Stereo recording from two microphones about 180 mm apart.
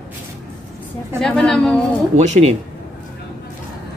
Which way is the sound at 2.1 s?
40° right (ahead or behind).